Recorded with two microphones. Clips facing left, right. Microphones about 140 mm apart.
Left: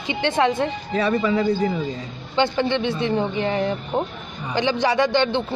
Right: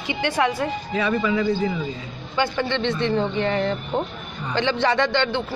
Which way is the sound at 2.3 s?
20° left (ahead or behind).